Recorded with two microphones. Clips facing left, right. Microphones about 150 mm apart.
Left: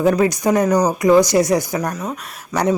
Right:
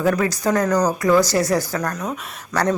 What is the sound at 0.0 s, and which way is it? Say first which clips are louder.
Speech: left 4 dB; 20° left (ahead or behind).